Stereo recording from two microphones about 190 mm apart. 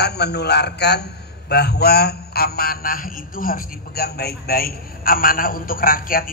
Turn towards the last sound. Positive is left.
turn(degrees=50)  # may be behind; listen again after turning